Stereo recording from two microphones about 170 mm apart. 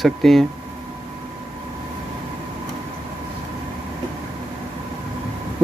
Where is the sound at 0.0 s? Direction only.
Centre (ahead or behind).